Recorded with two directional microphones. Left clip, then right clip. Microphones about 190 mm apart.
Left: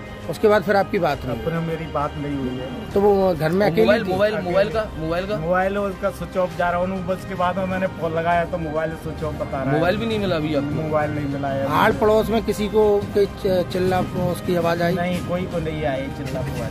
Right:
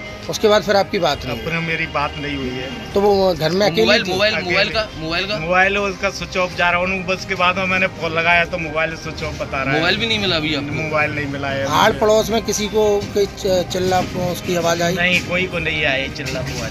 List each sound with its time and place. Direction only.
0.4 s speech: centre (ahead or behind)
3.8 s a man's voice: 55° left (ahead or behind)
5.5 s a man's voice: 15° left (ahead or behind)
9.8 s a man's voice: 55° left (ahead or behind)
10.9 s speech: 5° left (ahead or behind)
15.0 s a man's voice: 15° left (ahead or behind)